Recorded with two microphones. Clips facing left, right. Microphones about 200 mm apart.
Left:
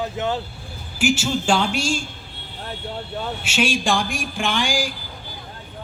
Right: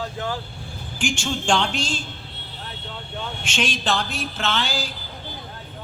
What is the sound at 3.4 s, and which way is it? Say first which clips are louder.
A woman's voice: left 4 dB; 10° left (ahead or behind).